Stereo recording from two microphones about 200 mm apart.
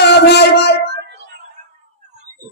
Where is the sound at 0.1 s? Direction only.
55° left (ahead or behind).